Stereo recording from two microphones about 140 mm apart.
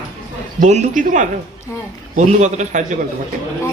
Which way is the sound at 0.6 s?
60° right (ahead or behind).